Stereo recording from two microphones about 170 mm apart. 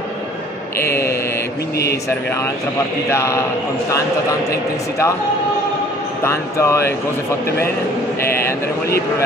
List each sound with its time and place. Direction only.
0.7 s speech: 15° left (ahead or behind)
3.1 s speech: 15° left (ahead or behind)
4.5 s speech: 20° left (ahead or behind)
6.2 s speech: 15° left (ahead or behind)
7.4 s speech: 65° left (ahead or behind)